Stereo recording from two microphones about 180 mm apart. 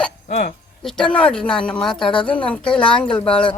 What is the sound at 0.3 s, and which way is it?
Speech, 40° left (ahead or behind).